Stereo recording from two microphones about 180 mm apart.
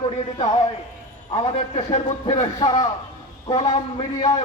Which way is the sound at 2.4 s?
20° left (ahead or behind).